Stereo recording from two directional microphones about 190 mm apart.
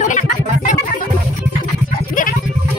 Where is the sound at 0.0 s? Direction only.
40° left (ahead or behind).